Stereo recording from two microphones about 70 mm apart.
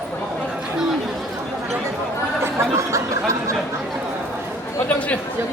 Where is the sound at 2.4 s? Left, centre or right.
Right.